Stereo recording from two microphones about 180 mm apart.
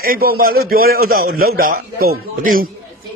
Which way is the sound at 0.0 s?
55° right (ahead or behind).